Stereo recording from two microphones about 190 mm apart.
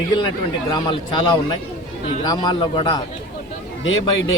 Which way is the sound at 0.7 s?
25° left (ahead or behind).